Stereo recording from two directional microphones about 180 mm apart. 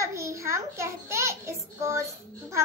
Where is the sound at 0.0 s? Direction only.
15° right (ahead or behind).